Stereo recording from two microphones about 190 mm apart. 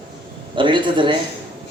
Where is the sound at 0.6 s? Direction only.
25° right (ahead or behind).